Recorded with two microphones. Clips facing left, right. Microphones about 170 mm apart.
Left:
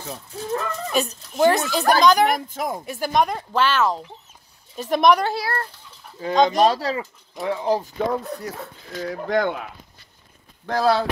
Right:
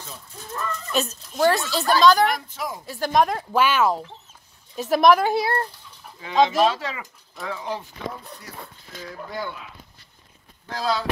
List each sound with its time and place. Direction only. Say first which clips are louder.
0.0 s speech: left 8 dB; 65° left (ahead or behind)
0.9 s a woman's voice: left 2 dB; 15° left (ahead or behind)
2.3 s speech: left 5 dB; 50° left (ahead or behind)
2.8 s a woman's voice: left 1 dB; 15° left (ahead or behind)
3.1 s speech: right 1 dB; centre (ahead or behind)
5.3 s a child's voice: right 4 dB; 20° right (ahead or behind)
6.2 s speech: left 2 dB; 40° left (ahead or behind)
7.3 s speech: left 7 dB; 25° left (ahead or behind)
7.6 s speech: left 11 dB; 35° left (ahead or behind)
8.1 s speech: left 12 dB; 70° left (ahead or behind)
10.7 s speech: left 6 dB; 60° left (ahead or behind)